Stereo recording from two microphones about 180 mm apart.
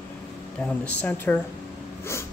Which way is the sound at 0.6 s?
10° left (ahead or behind).